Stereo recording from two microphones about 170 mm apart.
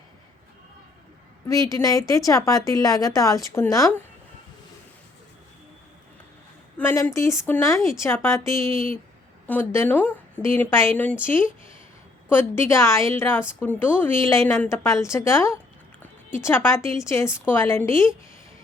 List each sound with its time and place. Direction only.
1.5 s a woman's voice: 20° left (ahead or behind)
6.7 s a woman's voice: 15° left (ahead or behind)
12.3 s a woman's voice: 15° left (ahead or behind)